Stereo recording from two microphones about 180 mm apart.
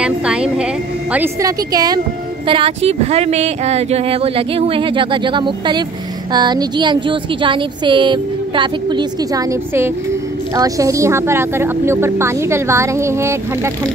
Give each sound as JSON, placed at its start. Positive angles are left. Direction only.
{"t": 0.0, "sound": "speech", "side_deg": -5}